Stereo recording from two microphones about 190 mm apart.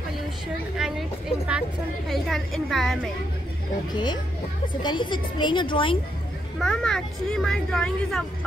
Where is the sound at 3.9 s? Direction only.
25° left (ahead or behind).